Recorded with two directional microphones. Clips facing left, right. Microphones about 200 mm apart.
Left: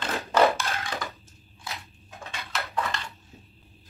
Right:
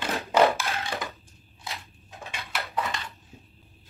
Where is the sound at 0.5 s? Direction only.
Centre (ahead or behind).